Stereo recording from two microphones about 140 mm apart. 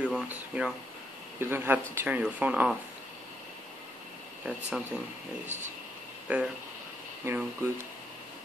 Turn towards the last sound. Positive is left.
turn(degrees=-20)  # may be behind; listen again after turning